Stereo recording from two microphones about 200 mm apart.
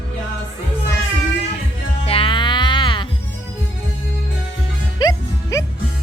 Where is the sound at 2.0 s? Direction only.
25° left (ahead or behind).